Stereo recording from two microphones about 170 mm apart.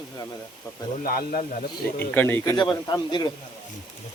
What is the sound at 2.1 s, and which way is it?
Speech, 10° left (ahead or behind).